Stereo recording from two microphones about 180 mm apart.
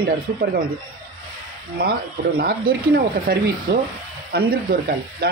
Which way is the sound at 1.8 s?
60° right (ahead or behind).